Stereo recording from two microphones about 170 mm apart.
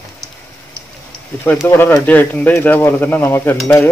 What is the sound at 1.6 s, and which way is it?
Speech, 15° left (ahead or behind).